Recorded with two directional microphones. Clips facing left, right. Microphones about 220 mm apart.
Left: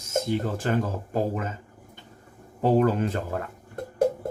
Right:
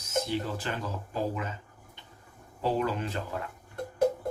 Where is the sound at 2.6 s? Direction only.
45° left (ahead or behind).